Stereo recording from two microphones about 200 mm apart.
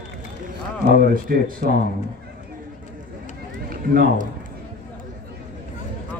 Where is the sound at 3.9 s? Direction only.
45° right (ahead or behind).